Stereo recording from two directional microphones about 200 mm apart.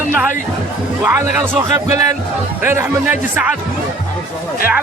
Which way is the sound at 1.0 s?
10° right (ahead or behind).